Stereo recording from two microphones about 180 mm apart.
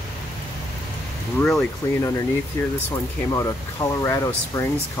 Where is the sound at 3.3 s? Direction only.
15° left (ahead or behind).